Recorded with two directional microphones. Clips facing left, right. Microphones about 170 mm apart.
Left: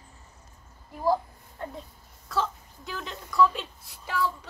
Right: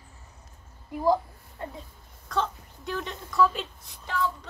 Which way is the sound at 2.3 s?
5° left (ahead or behind).